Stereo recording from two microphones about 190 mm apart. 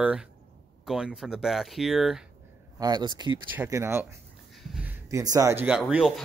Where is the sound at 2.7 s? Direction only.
20° right (ahead or behind).